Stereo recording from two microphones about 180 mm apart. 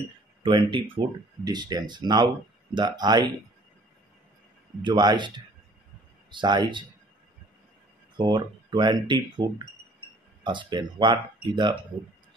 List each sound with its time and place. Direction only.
0.4 s speech: 25° right (ahead or behind)
4.8 s speech: 25° right (ahead or behind)
6.3 s speech: 25° right (ahead or behind)
8.2 s speech: 25° right (ahead or behind)